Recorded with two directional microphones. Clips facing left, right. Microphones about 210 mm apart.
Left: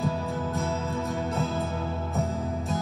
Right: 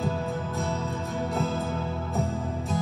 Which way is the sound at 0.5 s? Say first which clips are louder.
Left 1 dB; centre (ahead or behind).